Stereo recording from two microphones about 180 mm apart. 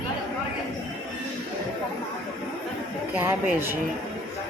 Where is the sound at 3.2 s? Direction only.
10° right (ahead or behind).